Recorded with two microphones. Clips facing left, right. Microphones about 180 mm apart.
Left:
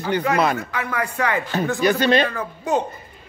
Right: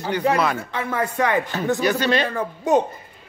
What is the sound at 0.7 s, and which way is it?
Speech, 20° right (ahead or behind).